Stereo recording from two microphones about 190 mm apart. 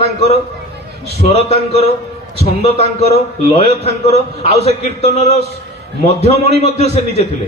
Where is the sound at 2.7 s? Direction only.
55° right (ahead or behind).